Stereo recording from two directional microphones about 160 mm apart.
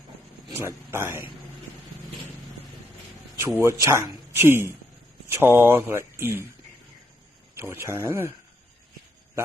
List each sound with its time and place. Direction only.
0.6 s a man's voice: 15° right (ahead or behind)
3.4 s a man's voice: 15° right (ahead or behind)
7.6 s a man's voice: 15° right (ahead or behind)